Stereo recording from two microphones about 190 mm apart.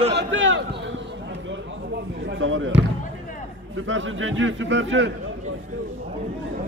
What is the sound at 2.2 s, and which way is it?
Speech, 85° right.